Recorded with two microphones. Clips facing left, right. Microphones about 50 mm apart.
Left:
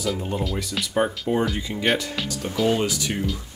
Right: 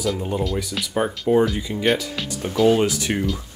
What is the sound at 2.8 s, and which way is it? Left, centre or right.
Speech, right.